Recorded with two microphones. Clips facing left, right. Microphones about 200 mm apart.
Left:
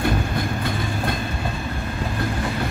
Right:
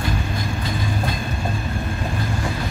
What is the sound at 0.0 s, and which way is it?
Train, 60° left (ahead or behind).